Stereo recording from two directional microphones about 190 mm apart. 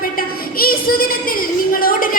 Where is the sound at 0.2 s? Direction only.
50° left (ahead or behind).